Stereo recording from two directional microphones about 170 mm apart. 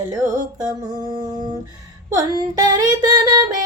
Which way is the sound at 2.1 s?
20° right (ahead or behind).